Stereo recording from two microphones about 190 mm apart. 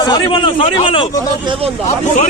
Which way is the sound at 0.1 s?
25° left (ahead or behind).